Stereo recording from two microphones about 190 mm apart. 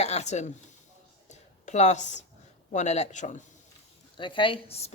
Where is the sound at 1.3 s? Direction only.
40° left (ahead or behind).